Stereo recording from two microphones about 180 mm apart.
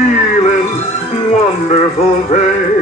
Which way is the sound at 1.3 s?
35° left (ahead or behind).